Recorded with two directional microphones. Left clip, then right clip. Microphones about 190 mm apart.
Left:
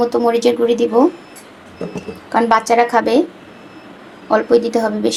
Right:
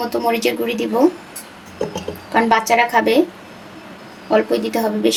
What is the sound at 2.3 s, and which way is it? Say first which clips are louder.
Speech: left 2 dB; 25° left (ahead or behind).